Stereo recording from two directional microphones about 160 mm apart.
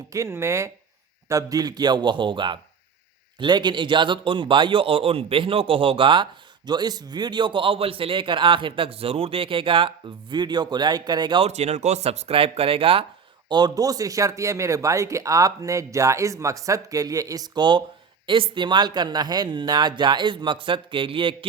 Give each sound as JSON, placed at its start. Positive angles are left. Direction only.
{"t": 0.1, "sound": "a man's voice", "side_deg": -15}